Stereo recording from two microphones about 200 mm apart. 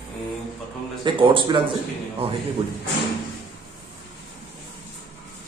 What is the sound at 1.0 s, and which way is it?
Speech, 25° right (ahead or behind).